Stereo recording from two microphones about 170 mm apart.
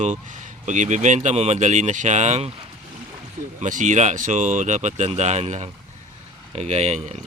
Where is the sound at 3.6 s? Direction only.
45° right (ahead or behind).